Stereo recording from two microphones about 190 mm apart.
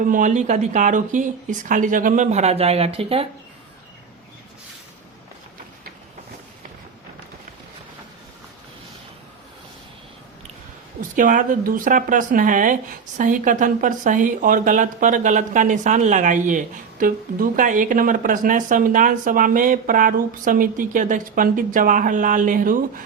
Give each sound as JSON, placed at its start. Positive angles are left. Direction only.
{"t": 0.1, "sound": "speech", "side_deg": -40}
{"t": 11.2, "sound": "speech", "side_deg": -45}